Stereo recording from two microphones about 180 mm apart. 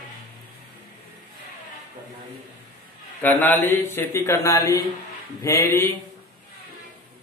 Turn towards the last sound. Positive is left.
turn(degrees=15)  # may be behind; listen again after turning